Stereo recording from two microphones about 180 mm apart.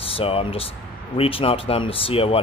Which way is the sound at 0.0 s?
30° left (ahead or behind).